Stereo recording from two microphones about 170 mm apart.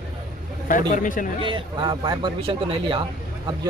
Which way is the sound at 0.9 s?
50° left (ahead or behind).